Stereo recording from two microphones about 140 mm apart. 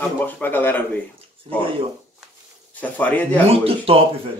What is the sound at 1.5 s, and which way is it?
Speech, 45° right (ahead or behind).